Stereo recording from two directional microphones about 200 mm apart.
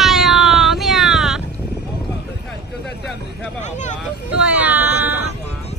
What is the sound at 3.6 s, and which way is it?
Vehicle, 35° left (ahead or behind).